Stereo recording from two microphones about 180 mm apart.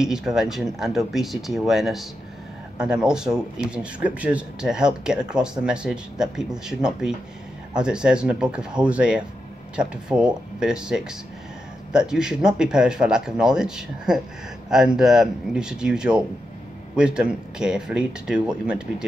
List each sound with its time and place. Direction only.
0.0 s speech: 5° right (ahead or behind)